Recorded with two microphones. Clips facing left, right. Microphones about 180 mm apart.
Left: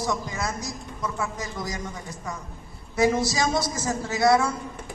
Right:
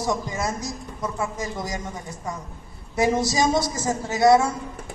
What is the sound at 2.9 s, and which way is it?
A man's voice, 20° right (ahead or behind).